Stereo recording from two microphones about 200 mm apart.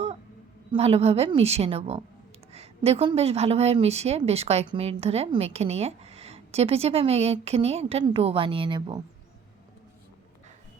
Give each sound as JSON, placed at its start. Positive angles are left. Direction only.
{"t": 0.7, "sound": "a woman's voice", "side_deg": -30}